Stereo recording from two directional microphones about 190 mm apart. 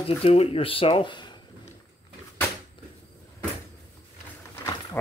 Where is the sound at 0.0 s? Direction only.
30° left (ahead or behind).